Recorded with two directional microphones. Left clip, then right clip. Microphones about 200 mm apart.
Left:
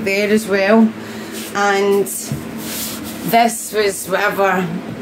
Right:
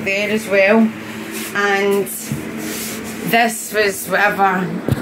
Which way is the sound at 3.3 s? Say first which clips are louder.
Left 2 dB; 10° left (ahead or behind).